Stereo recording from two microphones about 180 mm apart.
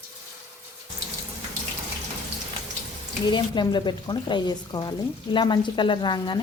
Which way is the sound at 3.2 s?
25° left (ahead or behind).